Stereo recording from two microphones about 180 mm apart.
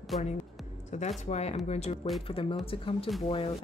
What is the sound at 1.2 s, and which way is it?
Speech, 35° left (ahead or behind).